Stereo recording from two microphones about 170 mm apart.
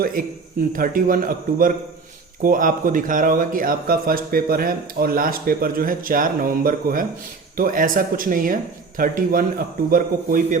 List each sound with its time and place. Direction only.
0.0 s speech: 60° right (ahead or behind)